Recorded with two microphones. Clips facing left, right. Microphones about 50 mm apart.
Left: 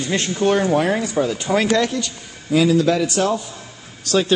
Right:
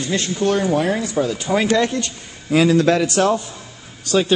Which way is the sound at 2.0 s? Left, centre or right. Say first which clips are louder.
Right 1 dB; right.